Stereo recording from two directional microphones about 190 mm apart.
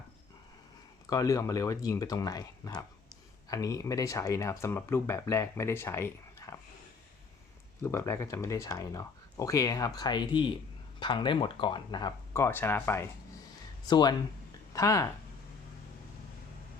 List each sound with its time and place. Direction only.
1.1 s speech: 20° left (ahead or behind)
7.8 s speech: 15° left (ahead or behind)